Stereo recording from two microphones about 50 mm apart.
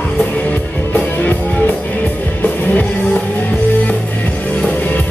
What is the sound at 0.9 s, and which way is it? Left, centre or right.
Music, left.